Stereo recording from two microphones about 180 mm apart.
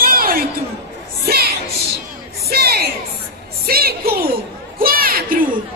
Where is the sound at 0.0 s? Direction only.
55° right (ahead or behind).